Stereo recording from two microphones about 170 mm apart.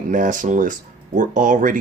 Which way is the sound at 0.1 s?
50° right (ahead or behind).